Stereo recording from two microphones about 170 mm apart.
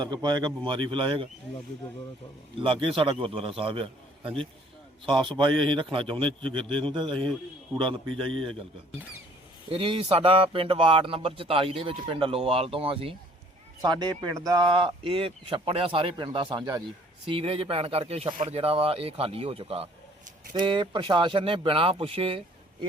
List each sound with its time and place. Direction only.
0.0 s speech: 25° right (ahead or behind)
2.6 s a man's voice: 30° right (ahead or behind)
9.6 s a man's voice: 30° right (ahead or behind)